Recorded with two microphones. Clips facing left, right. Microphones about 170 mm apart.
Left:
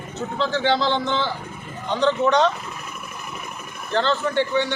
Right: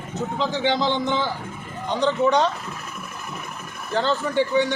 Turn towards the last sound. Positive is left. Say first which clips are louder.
# right 1 dB
turn(degrees=-10)  # may be behind; listen again after turning